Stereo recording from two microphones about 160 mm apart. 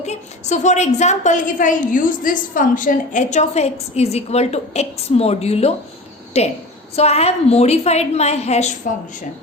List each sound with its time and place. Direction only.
0.0 s a woman's voice: 45° left (ahead or behind)